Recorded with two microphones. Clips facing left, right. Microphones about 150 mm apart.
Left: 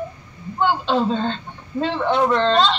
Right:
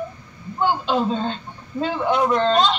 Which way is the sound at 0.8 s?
10° right (ahead or behind).